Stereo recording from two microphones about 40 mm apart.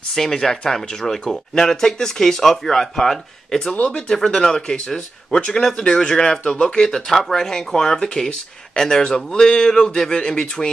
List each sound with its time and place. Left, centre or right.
0.1 s speech: centre
3.7 s speech: left
4.1 s speech: centre
6.9 s speech: centre